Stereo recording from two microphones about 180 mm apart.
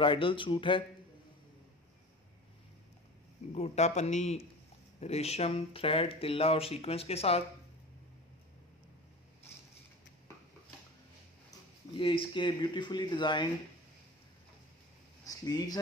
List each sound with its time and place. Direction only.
0.0 s speech: 30° left (ahead or behind)
3.5 s speech: 35° left (ahead or behind)
11.9 s speech: 30° left (ahead or behind)
15.2 s speech: 20° left (ahead or behind)